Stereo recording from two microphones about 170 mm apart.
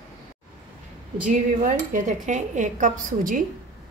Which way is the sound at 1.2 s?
50° right (ahead or behind).